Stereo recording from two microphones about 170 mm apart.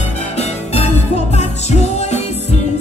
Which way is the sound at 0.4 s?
40° left (ahead or behind).